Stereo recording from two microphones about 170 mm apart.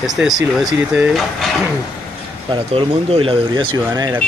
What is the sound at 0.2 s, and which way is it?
Speech, centre (ahead or behind).